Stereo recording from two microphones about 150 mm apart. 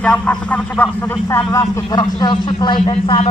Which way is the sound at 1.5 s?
25° left (ahead or behind).